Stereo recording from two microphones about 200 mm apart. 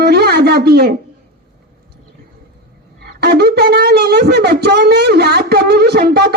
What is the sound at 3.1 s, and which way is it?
Wind instrument, 55° right (ahead or behind).